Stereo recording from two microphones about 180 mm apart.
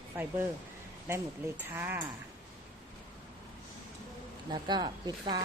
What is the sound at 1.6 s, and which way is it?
Speech, 10° right (ahead or behind).